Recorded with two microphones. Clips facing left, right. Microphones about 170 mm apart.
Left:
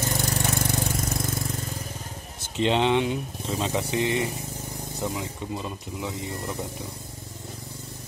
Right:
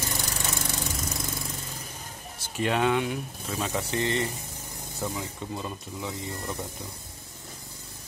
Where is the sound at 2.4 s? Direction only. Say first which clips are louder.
Left 3 dB; 20° left (ahead or behind).